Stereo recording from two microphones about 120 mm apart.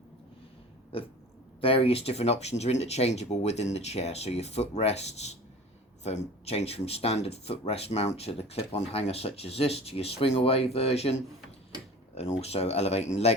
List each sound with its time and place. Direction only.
1.6 s speech: 50° left (ahead or behind)